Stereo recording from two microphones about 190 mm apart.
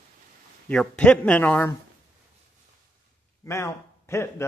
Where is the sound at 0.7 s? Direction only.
5° left (ahead or behind).